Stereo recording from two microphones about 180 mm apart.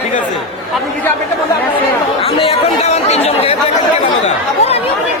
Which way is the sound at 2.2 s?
30° left (ahead or behind).